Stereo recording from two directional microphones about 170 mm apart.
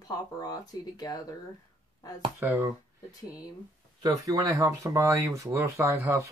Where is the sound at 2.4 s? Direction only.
10° right (ahead or behind).